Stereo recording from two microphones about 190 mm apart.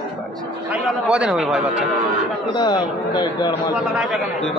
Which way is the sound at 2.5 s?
20° left (ahead or behind).